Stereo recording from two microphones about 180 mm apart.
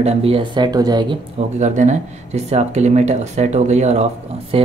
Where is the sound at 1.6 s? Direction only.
40° right (ahead or behind).